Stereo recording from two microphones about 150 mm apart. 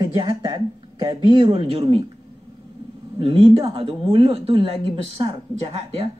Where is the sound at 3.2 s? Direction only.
35° right (ahead or behind).